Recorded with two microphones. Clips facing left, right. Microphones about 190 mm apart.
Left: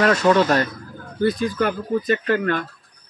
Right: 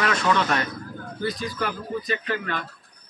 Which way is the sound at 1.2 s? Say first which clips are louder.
Left 8 dB; 55° left (ahead or behind).